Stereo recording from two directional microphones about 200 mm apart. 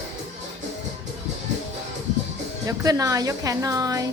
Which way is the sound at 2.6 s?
15° right (ahead or behind).